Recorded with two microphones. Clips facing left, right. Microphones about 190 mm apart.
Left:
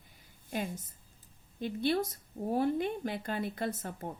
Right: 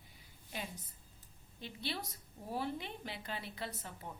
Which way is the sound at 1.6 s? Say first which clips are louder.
Left 13 dB; 50° left (ahead or behind).